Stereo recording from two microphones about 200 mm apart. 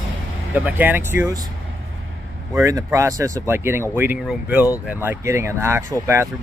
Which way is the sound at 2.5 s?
15° right (ahead or behind).